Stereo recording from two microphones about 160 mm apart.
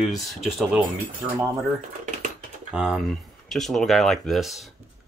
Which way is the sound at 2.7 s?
5° right (ahead or behind).